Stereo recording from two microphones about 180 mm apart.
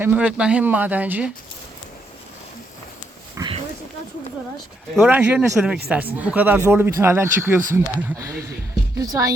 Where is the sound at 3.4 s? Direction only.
30° right (ahead or behind).